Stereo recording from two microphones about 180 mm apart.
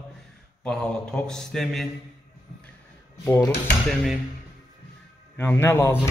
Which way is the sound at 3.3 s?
20° left (ahead or behind).